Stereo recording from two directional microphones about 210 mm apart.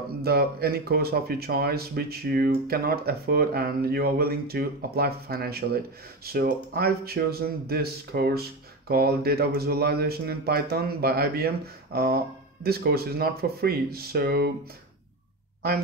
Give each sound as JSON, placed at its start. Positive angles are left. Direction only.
{"t": 0.2, "sound": "speech", "side_deg": -50}